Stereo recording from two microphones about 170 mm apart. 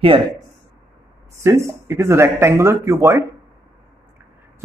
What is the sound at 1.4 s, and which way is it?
Speech, 15° right (ahead or behind).